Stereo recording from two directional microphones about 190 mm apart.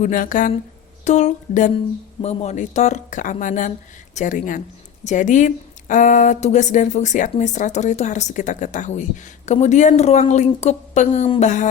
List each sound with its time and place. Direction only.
0.0 s speech: 45° left (ahead or behind)